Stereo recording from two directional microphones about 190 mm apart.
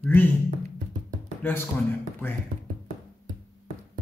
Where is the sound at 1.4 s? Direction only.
10° left (ahead or behind).